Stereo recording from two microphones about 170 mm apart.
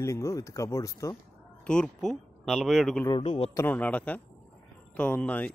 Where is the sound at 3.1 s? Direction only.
35° left (ahead or behind).